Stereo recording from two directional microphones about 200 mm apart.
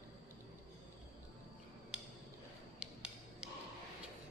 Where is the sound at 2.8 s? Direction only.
5° right (ahead or behind).